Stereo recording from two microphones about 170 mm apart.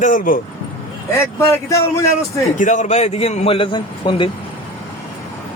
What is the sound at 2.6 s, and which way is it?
A man's voice, 50° left (ahead or behind).